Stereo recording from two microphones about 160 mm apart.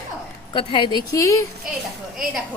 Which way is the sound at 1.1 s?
20° left (ahead or behind).